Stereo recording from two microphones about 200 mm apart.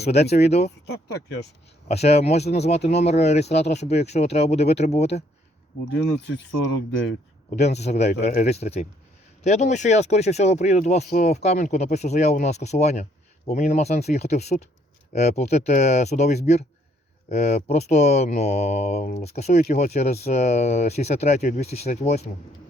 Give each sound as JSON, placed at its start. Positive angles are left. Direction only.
{"t": 0.0, "sound": "speech", "side_deg": 30}
{"t": 0.9, "sound": "speech", "side_deg": 55}
{"t": 1.9, "sound": "speech", "side_deg": 30}
{"t": 6.0, "sound": "speech", "side_deg": 60}
{"t": 7.5, "sound": "speech", "side_deg": 35}